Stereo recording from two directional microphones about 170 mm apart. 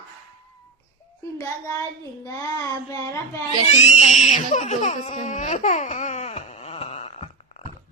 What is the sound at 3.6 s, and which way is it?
Speech, 40° left (ahead or behind).